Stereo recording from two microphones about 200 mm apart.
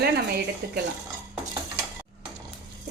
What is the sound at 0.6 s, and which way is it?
Dishes, 55° right (ahead or behind).